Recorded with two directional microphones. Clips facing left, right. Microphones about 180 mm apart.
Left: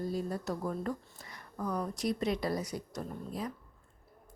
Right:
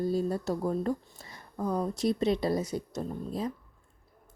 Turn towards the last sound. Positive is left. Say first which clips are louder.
# right 5 dB
turn(degrees=-25)  # may be behind; listen again after turning